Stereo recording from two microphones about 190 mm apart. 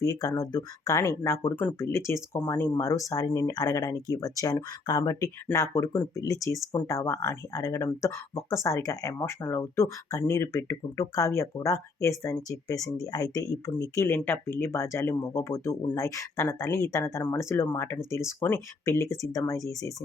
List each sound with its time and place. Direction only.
0.0 s speech: 20° left (ahead or behind)